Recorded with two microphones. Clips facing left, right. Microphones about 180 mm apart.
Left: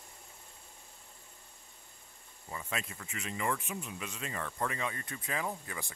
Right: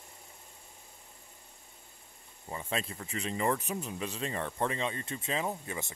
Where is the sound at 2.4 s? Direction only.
30° right (ahead or behind).